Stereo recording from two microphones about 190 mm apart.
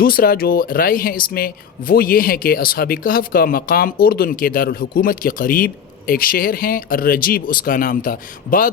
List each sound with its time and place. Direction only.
0.0 s speech: 50° left (ahead or behind)